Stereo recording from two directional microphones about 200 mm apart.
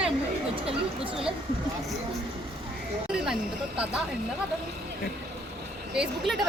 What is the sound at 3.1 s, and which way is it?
Speech, 5° right (ahead or behind).